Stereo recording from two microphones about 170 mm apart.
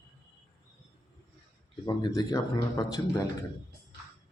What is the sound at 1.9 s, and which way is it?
Speech, 25° left (ahead or behind).